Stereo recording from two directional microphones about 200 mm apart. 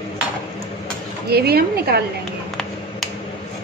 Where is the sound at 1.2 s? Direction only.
50° right (ahead or behind).